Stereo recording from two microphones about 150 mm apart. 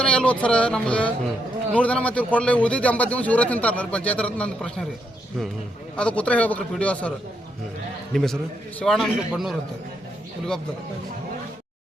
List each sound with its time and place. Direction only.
0.0 s speech: 5° left (ahead or behind)
6.0 s speech: 10° left (ahead or behind)
8.1 s a man's voice: centre (ahead or behind)